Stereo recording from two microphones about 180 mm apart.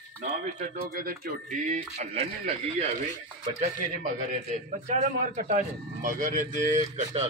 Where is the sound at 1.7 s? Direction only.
35° right (ahead or behind).